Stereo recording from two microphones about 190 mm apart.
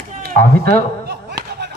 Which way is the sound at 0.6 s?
55° right (ahead or behind).